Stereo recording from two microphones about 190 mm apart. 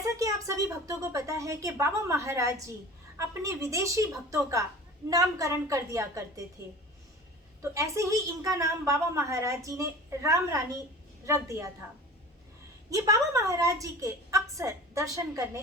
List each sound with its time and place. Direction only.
0.0 s a woman's voice: 15° right (ahead or behind)
7.6 s a woman's voice: 15° right (ahead or behind)
12.9 s a woman's voice: 15° right (ahead or behind)